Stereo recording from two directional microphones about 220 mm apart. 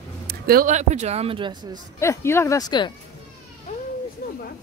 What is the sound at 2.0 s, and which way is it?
Speech, 10° left (ahead or behind).